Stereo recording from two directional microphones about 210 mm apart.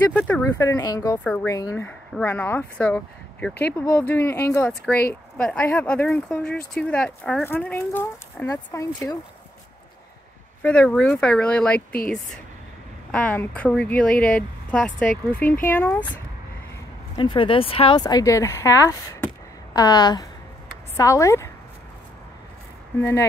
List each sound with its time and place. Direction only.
0.2 s speech: 10° left (ahead or behind)
10.6 s speech: 5° left (ahead or behind)
13.1 s speech: 10° left (ahead or behind)
17.2 s speech: 25° left (ahead or behind)